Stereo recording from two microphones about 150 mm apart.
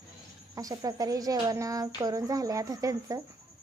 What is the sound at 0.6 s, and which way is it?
A child's voice, 25° right (ahead or behind).